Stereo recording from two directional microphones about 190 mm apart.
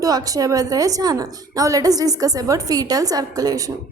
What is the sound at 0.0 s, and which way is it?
A woman's voice, 20° right (ahead or behind).